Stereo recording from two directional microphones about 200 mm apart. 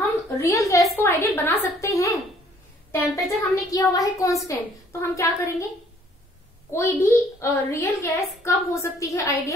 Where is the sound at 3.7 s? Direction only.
15° left (ahead or behind).